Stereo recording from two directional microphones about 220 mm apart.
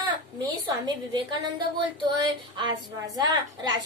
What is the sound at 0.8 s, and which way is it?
A woman's voice, 20° right (ahead or behind).